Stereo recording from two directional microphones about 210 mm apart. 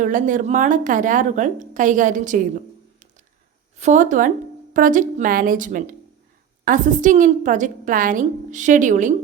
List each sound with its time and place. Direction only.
0.0 s a woman's voice: 35° right (ahead or behind)
3.8 s a woman's voice: 35° right (ahead or behind)